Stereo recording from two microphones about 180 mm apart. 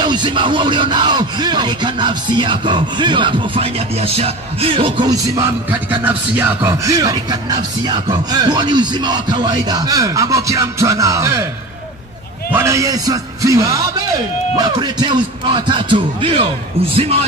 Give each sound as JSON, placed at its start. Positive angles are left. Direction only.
{"t": 0.0, "sound": "music", "side_deg": -25}
{"t": 5.7, "sound": "music", "side_deg": -10}
{"t": 12.5, "sound": "speech", "side_deg": -15}
{"t": 14.6, "sound": "music", "side_deg": -25}